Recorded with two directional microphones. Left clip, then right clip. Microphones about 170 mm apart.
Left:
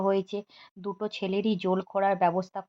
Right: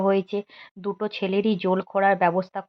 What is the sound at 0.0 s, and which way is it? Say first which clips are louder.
Speech: right 5 dB; 15° right (ahead or behind).